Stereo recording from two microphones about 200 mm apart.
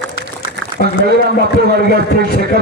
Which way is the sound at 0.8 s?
45° left (ahead or behind).